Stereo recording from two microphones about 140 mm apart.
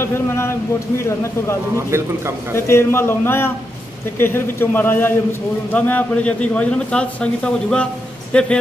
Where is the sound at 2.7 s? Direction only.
20° left (ahead or behind).